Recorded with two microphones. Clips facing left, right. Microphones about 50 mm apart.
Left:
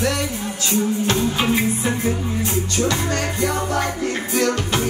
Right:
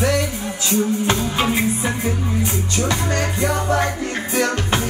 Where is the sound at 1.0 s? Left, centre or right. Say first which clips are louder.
Even; right.